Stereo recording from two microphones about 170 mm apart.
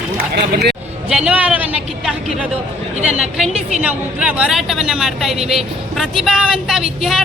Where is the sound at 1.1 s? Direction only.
5° right (ahead or behind).